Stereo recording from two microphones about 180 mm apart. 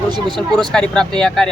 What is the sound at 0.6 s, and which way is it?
Speech, 5° left (ahead or behind).